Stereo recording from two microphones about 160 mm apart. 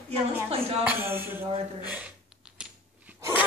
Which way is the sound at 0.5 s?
40° right (ahead or behind).